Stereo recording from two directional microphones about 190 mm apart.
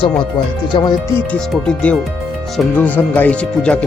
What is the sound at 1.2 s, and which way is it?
Speech, 5° left (ahead or behind).